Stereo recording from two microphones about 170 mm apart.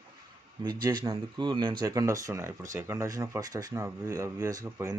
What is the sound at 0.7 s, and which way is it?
A man's voice, 25° right (ahead or behind).